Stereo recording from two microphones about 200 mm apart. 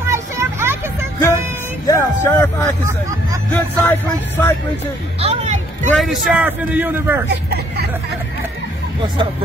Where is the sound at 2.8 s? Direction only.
15° right (ahead or behind).